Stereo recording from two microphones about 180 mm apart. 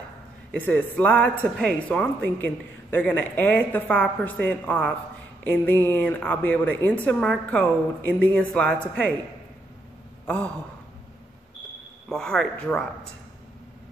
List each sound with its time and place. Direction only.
0.6 s a woman's voice: 10° left (ahead or behind)
10.2 s a sound: 5° left (ahead or behind)
12.1 s speech: 5° left (ahead or behind)